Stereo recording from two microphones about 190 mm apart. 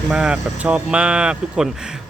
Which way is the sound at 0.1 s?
5° right (ahead or behind).